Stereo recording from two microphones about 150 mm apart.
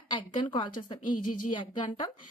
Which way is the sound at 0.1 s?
30° left (ahead or behind).